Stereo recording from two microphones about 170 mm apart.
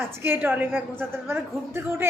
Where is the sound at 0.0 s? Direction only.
15° right (ahead or behind).